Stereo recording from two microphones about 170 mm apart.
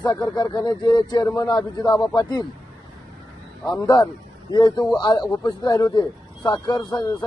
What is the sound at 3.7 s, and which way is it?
A man's voice, 20° left (ahead or behind).